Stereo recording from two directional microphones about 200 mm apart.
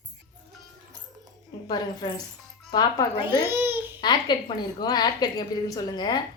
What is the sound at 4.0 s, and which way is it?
A woman's voice, 20° left (ahead or behind).